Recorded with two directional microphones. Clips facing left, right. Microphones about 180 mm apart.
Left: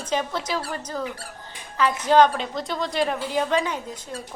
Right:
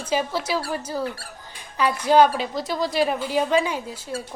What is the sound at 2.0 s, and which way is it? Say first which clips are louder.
A woman's voice: right 1 dB; 10° right (ahead or behind).